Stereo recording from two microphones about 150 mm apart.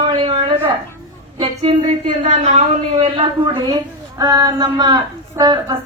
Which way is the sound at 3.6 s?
25° right (ahead or behind).